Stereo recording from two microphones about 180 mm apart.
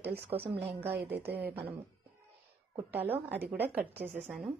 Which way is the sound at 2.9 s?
10° right (ahead or behind).